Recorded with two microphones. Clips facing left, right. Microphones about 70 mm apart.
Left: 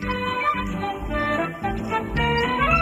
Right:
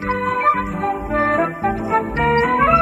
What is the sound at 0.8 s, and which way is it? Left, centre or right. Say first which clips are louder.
Music: right 7 dB; right.